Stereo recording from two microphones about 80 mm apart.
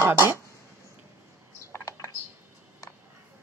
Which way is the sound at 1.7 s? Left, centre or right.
Left.